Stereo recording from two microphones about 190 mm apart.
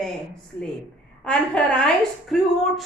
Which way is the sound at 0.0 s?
Centre (ahead or behind).